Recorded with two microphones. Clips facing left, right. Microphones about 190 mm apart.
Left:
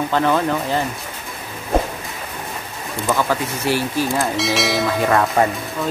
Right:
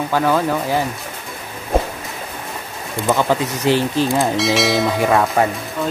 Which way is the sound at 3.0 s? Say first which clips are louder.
Right 3 dB; 20° right (ahead or behind).